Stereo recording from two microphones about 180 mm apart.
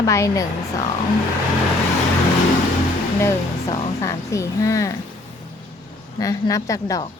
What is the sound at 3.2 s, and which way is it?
Speech, 15° left (ahead or behind).